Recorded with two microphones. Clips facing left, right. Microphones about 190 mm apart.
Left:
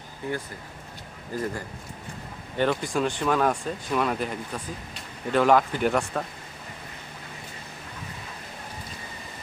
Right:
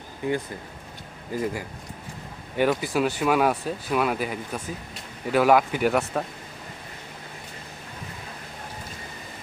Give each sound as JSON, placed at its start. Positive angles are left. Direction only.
{"t": 0.2, "sound": "speech", "side_deg": -15}
{"t": 2.6, "sound": "speech", "side_deg": -5}